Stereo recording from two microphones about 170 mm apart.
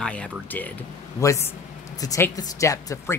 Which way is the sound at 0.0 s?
5° left (ahead or behind).